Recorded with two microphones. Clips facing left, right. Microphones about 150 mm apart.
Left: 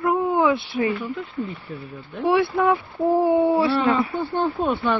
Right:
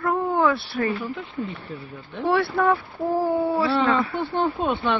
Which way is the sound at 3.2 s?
20° left (ahead or behind).